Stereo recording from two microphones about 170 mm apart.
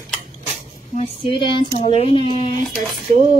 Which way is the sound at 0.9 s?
30° left (ahead or behind).